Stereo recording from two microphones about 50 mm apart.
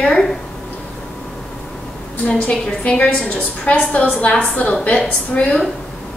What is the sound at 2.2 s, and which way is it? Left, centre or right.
A woman's voice, left.